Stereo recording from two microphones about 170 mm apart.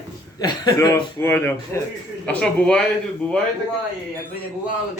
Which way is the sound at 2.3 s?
5° left (ahead or behind).